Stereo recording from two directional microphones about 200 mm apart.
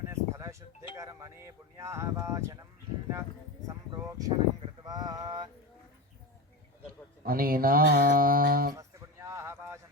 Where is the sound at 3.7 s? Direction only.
15° right (ahead or behind).